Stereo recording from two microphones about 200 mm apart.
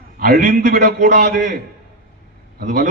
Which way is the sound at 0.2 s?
45° right (ahead or behind).